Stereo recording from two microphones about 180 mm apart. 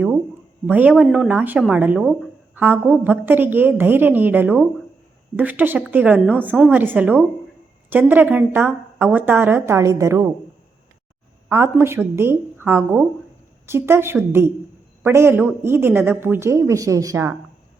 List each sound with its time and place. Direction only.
0.7 s a woman's voice: 10° right (ahead or behind)
11.4 s a woman's voice: 15° right (ahead or behind)